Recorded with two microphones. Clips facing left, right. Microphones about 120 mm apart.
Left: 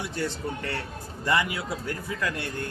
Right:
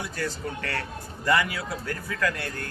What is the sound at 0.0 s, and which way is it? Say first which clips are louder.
Speech: left 1 dB; 20° left (ahead or behind).